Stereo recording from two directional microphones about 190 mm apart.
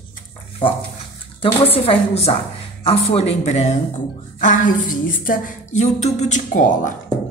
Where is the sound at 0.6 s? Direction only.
25° left (ahead or behind).